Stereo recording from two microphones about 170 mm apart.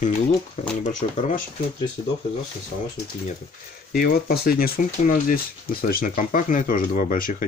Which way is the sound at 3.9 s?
60° left (ahead or behind).